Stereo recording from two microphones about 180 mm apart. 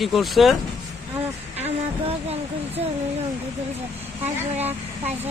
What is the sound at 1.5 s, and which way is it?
Vehicle, 35° right (ahead or behind).